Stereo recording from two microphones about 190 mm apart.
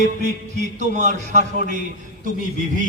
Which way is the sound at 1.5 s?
50° left (ahead or behind).